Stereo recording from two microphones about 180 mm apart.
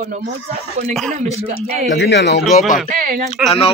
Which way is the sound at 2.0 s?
70° left (ahead or behind).